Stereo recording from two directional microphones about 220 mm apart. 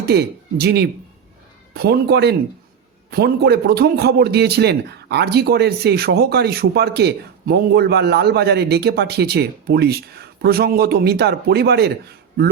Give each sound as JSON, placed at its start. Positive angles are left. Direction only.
{"t": 0.0, "sound": "a man's voice", "side_deg": -45}